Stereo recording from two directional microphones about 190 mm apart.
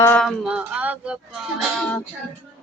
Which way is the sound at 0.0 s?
5° left (ahead or behind).